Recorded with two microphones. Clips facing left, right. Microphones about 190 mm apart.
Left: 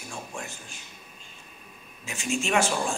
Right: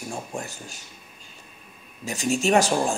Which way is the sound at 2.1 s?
40° right (ahead or behind).